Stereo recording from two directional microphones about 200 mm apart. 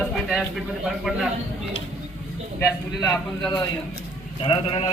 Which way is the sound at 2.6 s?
15° left (ahead or behind).